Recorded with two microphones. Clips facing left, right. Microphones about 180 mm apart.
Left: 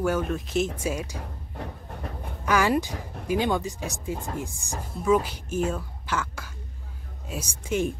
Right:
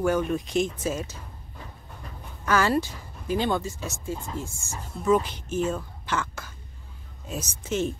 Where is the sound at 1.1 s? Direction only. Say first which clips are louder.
Left 7 dB; 65° left (ahead or behind).